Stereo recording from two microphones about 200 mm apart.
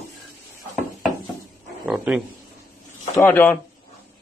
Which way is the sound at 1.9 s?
5° right (ahead or behind).